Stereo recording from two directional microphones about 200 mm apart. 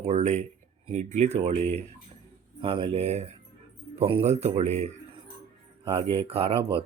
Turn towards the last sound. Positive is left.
turn(degrees=-30)  # may be behind; listen again after turning